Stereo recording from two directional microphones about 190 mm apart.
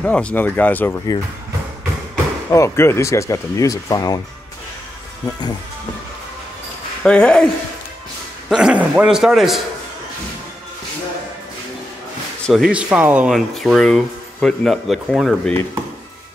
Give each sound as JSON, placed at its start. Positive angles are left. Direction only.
{"t": 0.0, "sound": "speech", "side_deg": 5}
{"t": 2.5, "sound": "speech", "side_deg": 15}
{"t": 7.0, "sound": "speech", "side_deg": 5}
{"t": 8.5, "sound": "speech", "side_deg": -5}
{"t": 12.4, "sound": "speech", "side_deg": 0}